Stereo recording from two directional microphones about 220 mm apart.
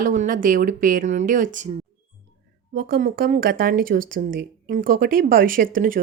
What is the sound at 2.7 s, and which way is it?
A woman's voice, 45° right (ahead or behind).